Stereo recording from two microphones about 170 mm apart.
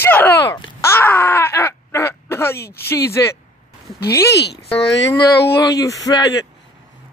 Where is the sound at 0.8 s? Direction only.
15° left (ahead or behind).